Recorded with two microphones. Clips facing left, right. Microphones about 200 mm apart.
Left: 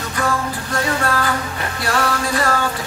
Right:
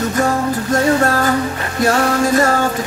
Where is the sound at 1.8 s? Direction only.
45° right (ahead or behind).